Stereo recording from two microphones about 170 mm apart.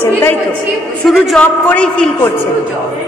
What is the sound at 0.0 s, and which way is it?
Speech, 10° left (ahead or behind).